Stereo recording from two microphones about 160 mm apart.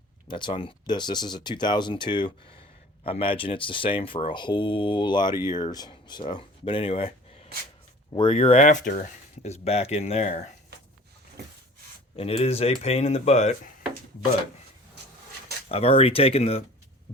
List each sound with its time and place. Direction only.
0.3 s speech: 30° left (ahead or behind)
8.6 s speech: 55° left (ahead or behind)
9.4 s speech: 40° left (ahead or behind)
12.1 s speech: 40° left (ahead or behind)
15.7 s speech: 40° left (ahead or behind)